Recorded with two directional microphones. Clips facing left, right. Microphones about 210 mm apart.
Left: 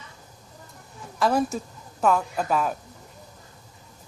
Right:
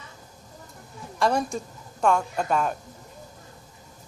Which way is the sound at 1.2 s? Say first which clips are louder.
Left 1 dB; 5° left (ahead or behind).